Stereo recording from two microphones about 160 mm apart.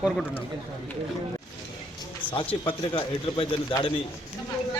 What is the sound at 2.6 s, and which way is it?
Speech, 35° left (ahead or behind).